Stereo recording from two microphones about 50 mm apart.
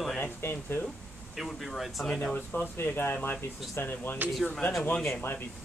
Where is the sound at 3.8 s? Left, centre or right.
Left.